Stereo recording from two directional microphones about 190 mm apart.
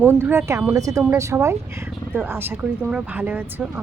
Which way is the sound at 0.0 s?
10° right (ahead or behind).